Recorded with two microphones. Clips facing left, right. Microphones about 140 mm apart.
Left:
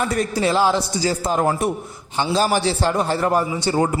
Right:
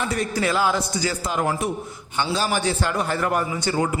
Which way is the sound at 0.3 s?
30° left (ahead or behind).